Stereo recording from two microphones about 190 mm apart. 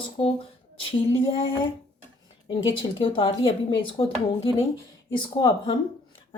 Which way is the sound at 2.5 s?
25° left (ahead or behind).